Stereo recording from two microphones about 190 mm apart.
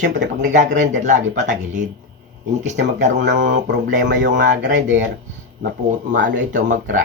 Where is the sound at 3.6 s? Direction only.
70° right (ahead or behind).